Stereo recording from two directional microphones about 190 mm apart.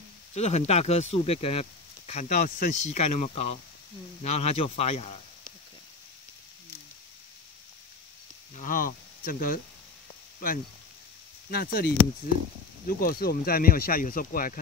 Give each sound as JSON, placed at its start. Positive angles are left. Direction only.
{"t": 0.3, "sound": "speech", "side_deg": 35}
{"t": 2.8, "sound": "speech", "side_deg": 35}
{"t": 8.5, "sound": "speech", "side_deg": 45}
{"t": 11.5, "sound": "speech", "side_deg": 50}